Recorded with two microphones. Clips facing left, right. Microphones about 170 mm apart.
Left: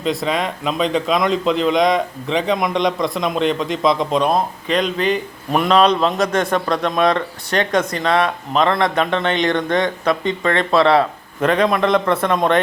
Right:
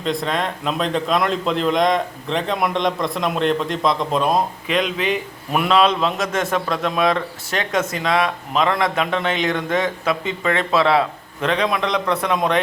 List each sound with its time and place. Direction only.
0.0 s a man's voice: 5° left (ahead or behind)
5.5 s speech: 35° left (ahead or behind)
5.7 s a man's voice: centre (ahead or behind)